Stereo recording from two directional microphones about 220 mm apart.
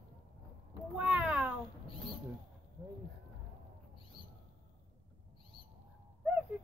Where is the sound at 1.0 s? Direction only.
5° right (ahead or behind).